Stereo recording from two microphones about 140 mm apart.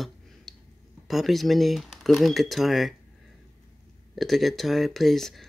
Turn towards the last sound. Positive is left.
turn(degrees=0)  # may be behind; listen again after turning